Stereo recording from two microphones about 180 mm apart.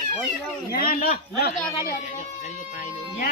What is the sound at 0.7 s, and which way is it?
Speech, 55° left (ahead or behind).